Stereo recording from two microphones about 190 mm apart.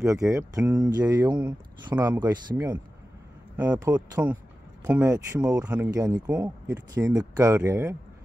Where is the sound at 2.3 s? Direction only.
20° right (ahead or behind).